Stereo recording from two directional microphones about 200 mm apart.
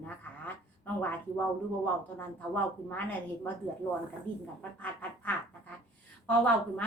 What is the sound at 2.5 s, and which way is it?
Speech, 10° left (ahead or behind).